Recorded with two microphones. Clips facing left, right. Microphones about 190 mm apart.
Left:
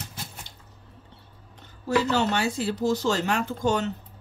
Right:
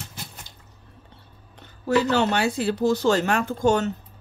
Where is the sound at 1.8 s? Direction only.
60° right (ahead or behind).